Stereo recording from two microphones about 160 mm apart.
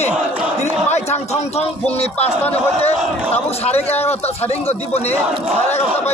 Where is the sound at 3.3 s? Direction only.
40° left (ahead or behind).